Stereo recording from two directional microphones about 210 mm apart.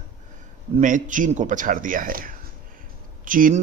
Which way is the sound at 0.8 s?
35° right (ahead or behind).